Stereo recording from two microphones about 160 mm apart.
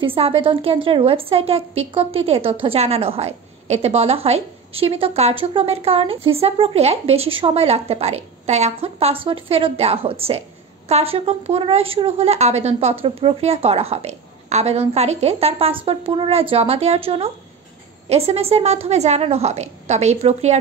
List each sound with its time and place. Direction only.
0.0 s a woman's voice: 35° right (ahead or behind)